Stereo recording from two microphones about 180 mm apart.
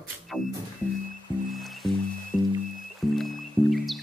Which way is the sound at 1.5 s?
Centre (ahead or behind).